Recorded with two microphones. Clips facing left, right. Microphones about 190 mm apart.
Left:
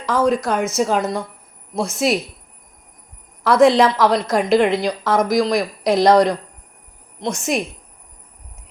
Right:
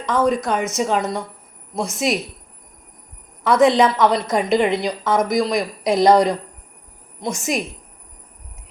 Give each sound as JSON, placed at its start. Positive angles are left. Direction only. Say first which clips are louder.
{"t": 0.0, "sound": "a woman's voice", "louder": "left 1 dB", "side_deg": 0}
{"t": 3.4, "sound": "a woman's voice", "louder": "left 2 dB", "side_deg": 0}